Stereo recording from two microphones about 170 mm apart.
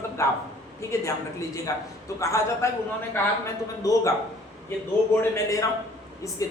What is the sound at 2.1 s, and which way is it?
Speech, 15° left (ahead or behind).